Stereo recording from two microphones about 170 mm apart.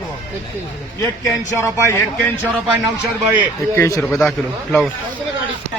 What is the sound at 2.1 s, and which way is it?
Speech, 5° left (ahead or behind).